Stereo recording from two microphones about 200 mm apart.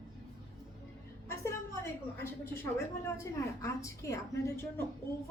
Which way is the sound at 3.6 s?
15° left (ahead or behind).